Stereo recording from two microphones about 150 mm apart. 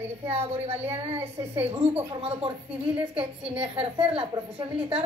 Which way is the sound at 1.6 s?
40° right (ahead or behind).